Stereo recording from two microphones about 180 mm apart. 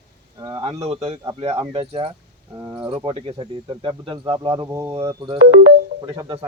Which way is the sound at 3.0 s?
30° right (ahead or behind).